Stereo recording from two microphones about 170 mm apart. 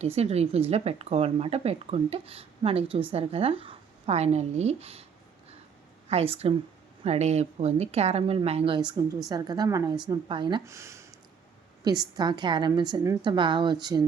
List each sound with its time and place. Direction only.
0.0 s speech: 35° right (ahead or behind)
6.1 s a woman's voice: 35° right (ahead or behind)
10.7 s speech: 15° right (ahead or behind)
12.1 s a woman's voice: 25° right (ahead or behind)